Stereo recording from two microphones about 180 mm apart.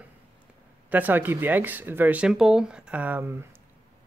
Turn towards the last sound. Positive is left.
turn(degrees=-10)  # may be behind; listen again after turning